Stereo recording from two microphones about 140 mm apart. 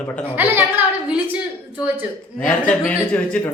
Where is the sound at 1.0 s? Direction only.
10° right (ahead or behind).